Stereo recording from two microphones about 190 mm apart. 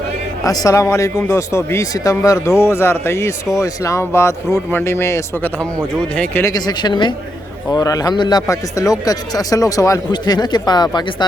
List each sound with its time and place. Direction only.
0.4 s speech: 20° left (ahead or behind)